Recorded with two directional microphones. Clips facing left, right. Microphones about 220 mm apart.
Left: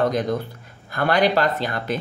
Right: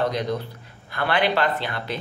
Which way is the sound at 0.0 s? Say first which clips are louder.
Left 3 dB; 50° left (ahead or behind).